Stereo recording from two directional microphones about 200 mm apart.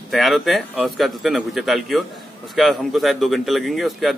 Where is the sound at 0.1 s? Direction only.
Centre (ahead or behind).